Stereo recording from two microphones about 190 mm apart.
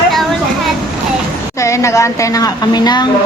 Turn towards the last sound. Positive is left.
turn(degrees=20)  # may be behind; listen again after turning